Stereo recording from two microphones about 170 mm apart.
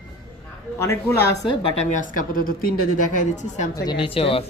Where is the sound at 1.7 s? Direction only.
50° left (ahead or behind).